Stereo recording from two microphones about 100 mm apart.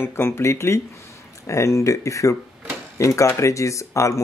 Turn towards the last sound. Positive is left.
turn(degrees=30)  # may be behind; listen again after turning